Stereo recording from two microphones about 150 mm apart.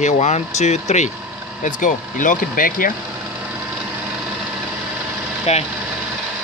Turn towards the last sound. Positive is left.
turn(degrees=45)  # may be behind; listen again after turning